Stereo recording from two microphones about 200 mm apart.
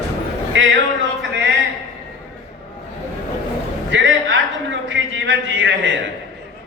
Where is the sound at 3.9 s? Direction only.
65° right (ahead or behind).